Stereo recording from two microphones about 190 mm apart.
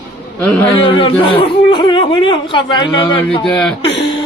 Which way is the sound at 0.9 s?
30° left (ahead or behind).